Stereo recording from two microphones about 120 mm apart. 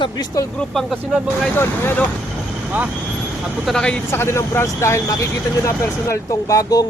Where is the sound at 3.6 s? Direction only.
5° left (ahead or behind).